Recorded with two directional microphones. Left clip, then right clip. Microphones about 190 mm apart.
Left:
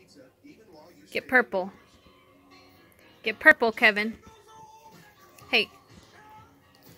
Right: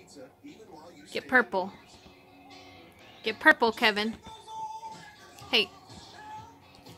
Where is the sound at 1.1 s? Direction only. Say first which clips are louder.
Left 2 dB; 25° left (ahead or behind).